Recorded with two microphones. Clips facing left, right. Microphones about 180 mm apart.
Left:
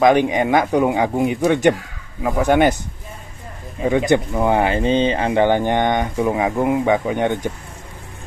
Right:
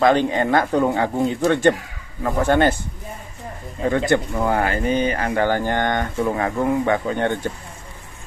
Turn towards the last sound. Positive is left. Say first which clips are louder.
# left 2 dB
turn(degrees=15)  # may be behind; listen again after turning